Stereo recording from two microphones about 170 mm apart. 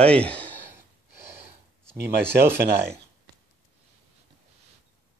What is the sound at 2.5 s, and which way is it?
Speech, 80° right.